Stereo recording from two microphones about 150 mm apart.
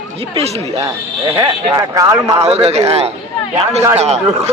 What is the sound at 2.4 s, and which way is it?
Speech, 45° right (ahead or behind).